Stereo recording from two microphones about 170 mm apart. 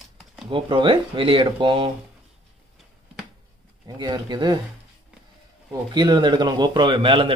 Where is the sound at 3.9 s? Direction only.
25° right (ahead or behind).